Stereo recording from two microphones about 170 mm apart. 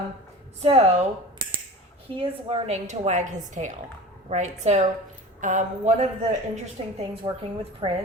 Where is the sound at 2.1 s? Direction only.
35° right (ahead or behind).